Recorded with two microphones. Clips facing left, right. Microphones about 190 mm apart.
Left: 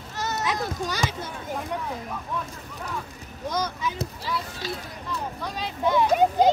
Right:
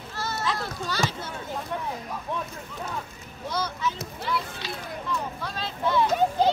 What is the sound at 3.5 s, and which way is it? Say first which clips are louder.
Rowboat: left 1 dB; 15° left (ahead or behind).